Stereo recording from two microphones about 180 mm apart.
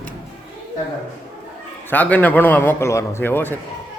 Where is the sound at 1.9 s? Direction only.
10° left (ahead or behind).